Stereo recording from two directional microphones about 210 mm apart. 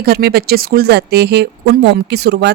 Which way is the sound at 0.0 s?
45° right (ahead or behind).